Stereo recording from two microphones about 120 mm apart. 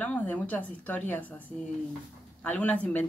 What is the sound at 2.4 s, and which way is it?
Speech, 15° left (ahead or behind).